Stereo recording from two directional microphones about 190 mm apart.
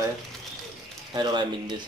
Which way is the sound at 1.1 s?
25° right (ahead or behind).